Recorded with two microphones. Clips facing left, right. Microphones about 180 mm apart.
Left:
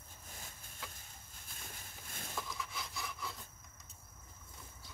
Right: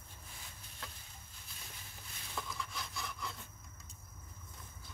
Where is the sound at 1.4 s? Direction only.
50° left (ahead or behind).